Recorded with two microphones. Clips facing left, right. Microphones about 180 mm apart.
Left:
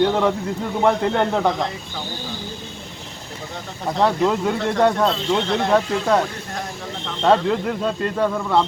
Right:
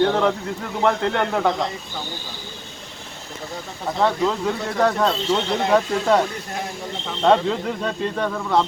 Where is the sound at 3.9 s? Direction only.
5° left (ahead or behind).